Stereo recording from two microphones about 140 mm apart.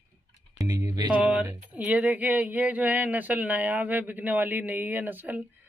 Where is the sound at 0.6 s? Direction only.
25° right (ahead or behind).